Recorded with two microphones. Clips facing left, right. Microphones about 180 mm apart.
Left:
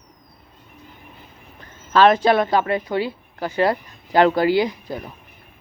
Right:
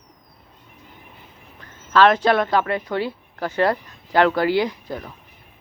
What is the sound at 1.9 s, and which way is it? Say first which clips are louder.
Speech: left 1 dB; 15° left (ahead or behind).